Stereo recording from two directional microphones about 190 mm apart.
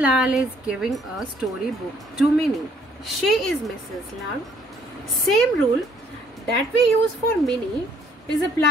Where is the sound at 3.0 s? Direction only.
Centre (ahead or behind).